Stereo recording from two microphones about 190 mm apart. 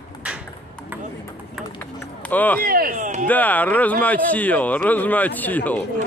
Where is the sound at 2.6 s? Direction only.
50° right (ahead or behind).